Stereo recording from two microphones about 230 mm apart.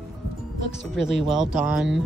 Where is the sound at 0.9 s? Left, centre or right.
Right.